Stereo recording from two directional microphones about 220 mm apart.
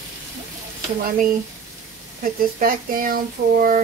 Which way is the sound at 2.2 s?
40° right (ahead or behind).